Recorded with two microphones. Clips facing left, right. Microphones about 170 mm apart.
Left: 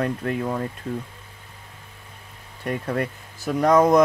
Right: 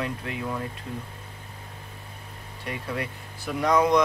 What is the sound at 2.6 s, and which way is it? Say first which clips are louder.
Speech: left 6 dB; 50° left (ahead or behind).